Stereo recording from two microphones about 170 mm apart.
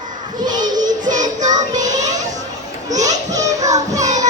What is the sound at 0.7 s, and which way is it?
Music, 50° right (ahead or behind).